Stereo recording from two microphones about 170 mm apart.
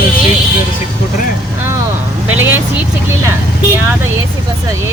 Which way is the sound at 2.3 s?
10° right (ahead or behind).